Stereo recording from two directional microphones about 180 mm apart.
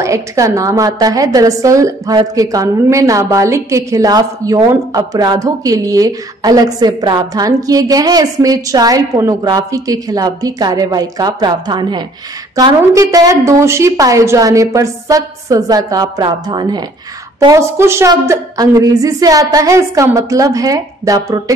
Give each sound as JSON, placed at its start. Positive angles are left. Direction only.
{"t": 0.0, "sound": "a woman's voice", "side_deg": -15}